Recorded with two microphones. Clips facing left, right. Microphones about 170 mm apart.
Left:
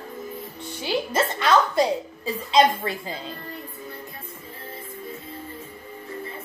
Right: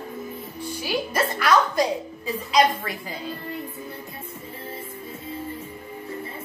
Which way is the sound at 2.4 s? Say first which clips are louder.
Left 2 dB; 25° left (ahead or behind).